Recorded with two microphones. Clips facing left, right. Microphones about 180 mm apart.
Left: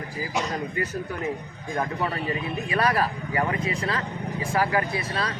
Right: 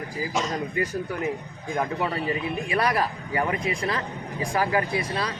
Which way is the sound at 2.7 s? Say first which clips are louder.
Left 1 dB; 15° right (ahead or behind).